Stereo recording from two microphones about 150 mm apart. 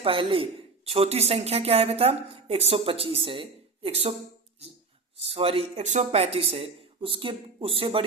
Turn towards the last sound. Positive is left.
turn(degrees=-35)  # may be behind; listen again after turning